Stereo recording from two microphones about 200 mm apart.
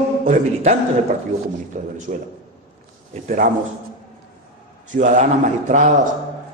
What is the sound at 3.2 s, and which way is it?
Speech, 40° right (ahead or behind).